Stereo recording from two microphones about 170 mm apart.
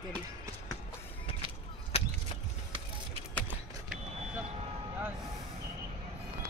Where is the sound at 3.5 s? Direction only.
5° right (ahead or behind).